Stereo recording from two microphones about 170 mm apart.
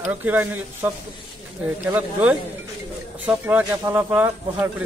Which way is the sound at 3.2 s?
10° right (ahead or behind).